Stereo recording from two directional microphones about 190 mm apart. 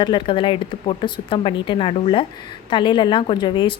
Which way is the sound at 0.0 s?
25° left (ahead or behind).